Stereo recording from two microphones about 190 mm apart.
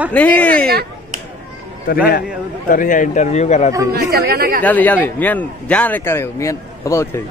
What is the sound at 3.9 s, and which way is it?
Speech, 55° right (ahead or behind).